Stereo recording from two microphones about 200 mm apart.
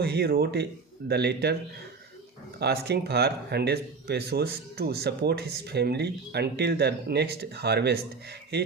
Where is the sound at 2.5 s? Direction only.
55° right (ahead or behind).